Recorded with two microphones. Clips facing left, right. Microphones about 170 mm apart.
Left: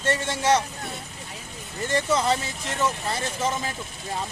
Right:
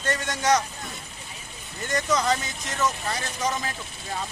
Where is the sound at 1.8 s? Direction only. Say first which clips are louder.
Left 2 dB; 30° left (ahead or behind).